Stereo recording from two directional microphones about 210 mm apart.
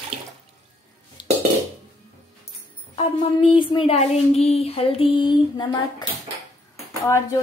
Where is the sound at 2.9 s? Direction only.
25° left (ahead or behind).